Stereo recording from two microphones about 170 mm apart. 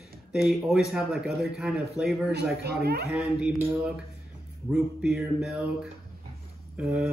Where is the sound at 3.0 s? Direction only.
Centre (ahead or behind).